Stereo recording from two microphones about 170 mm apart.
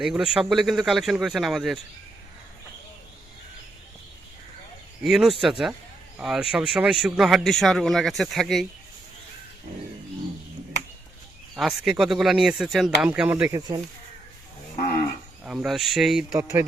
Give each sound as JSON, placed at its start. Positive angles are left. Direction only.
{"t": 0.0, "sound": "a man's voice", "side_deg": -5}
{"t": 5.0, "sound": "a man's voice", "side_deg": 0}
{"t": 11.5, "sound": "a man's voice", "side_deg": 0}
{"t": 13.5, "sound": "speech", "side_deg": -20}
{"t": 15.4, "sound": "a man's voice", "side_deg": -5}